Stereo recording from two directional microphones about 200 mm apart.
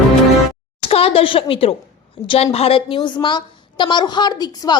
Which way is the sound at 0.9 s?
30° left (ahead or behind).